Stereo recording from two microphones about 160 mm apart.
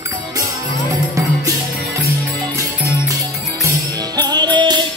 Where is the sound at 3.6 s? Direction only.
25° right (ahead or behind).